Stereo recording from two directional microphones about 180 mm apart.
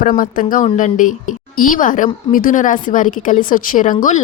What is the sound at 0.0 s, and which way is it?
A woman's voice, 50° left (ahead or behind).